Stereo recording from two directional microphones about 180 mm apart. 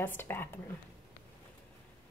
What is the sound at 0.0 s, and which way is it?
Speech, 10° left (ahead or behind).